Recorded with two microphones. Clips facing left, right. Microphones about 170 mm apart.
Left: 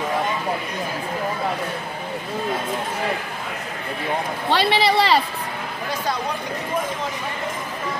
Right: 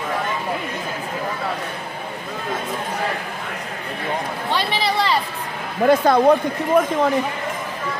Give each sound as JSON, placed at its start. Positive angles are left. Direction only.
{"t": 4.5, "sound": "speech", "side_deg": 70}
{"t": 5.9, "sound": "speech", "side_deg": -55}